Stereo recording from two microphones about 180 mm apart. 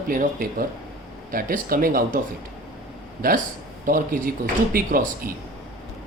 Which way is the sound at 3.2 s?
55° right (ahead or behind).